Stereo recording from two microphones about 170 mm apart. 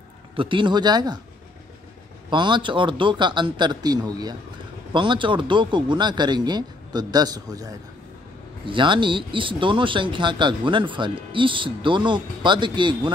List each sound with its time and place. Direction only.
0.4 s speech: 30° right (ahead or behind)
2.2 s speech: 30° right (ahead or behind)